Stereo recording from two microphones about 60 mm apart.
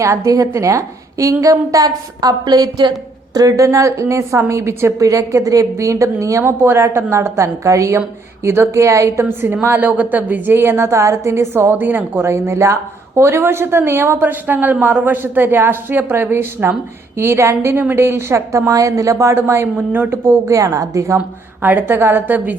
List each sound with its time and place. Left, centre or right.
0.0 s a woman's voice: right
0.3 s a woman's voice: right
3.3 s a woman's voice: right
4.9 s a woman's voice: right
6.6 s a woman's voice: right
8.4 s a woman's voice: right
9.6 s speech: right
12.2 s speech: right
17.2 s a woman's voice: right
20.4 s a woman's voice: right
21.6 s speech: right